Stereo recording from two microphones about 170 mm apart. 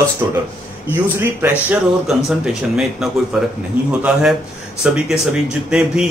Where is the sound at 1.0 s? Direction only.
10° right (ahead or behind).